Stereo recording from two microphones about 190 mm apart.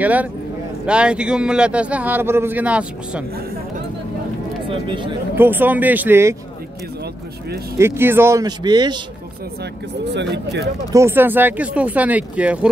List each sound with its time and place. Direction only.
0.0 s speech: 10° right (ahead or behind)
4.6 s speech: 25° right (ahead or behind)
5.3 s speech: 10° right (ahead or behind)
7.7 s speech: 15° right (ahead or behind)
10.0 s speech: 65° right (ahead or behind)
10.9 s speech: 15° right (ahead or behind)